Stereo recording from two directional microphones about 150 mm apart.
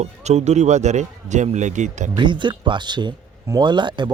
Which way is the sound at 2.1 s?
30° right (ahead or behind).